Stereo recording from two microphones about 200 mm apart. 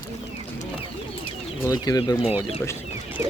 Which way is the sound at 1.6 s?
20° left (ahead or behind).